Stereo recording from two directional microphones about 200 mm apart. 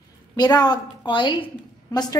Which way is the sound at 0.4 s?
20° left (ahead or behind).